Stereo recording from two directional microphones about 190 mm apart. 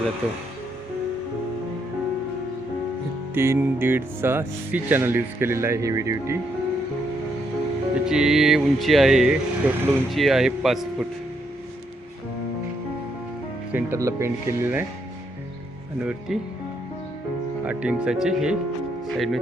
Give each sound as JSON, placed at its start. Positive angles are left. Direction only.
{"t": 3.3, "sound": "speech", "side_deg": -15}
{"t": 8.0, "sound": "speech", "side_deg": -5}
{"t": 13.7, "sound": "speech", "side_deg": -15}
{"t": 16.0, "sound": "speech", "side_deg": -5}
{"t": 17.7, "sound": "speech", "side_deg": -5}